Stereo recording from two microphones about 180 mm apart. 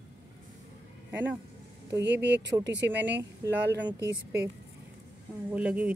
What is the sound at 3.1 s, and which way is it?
Speech, 10° right (ahead or behind).